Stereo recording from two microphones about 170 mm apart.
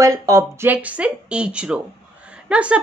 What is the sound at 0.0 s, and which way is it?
Speech, 20° right (ahead or behind).